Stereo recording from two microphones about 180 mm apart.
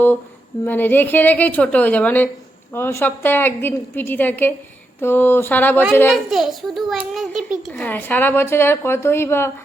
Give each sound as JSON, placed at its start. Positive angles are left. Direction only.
{"t": 0.6, "sound": "a woman's voice", "side_deg": 10}
{"t": 6.1, "sound": "a child's voice", "side_deg": 0}
{"t": 7.7, "sound": "a woman's voice", "side_deg": 10}